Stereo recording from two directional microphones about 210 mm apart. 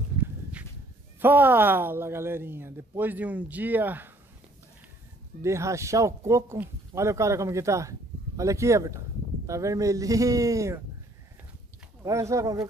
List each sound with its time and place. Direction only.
1.2 s speech: 10° right (ahead or behind)
5.4 s speech: 15° right (ahead or behind)
12.0 s speech: 15° right (ahead or behind)